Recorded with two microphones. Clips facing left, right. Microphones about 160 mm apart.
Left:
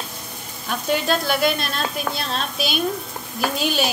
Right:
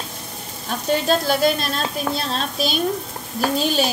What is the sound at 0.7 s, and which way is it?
Sizzle, 35° right (ahead or behind).